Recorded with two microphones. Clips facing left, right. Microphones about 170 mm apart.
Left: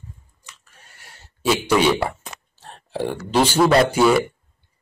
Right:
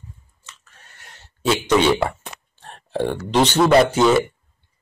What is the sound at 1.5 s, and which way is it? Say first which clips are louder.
Speech: right 1 dB; 5° left (ahead or behind).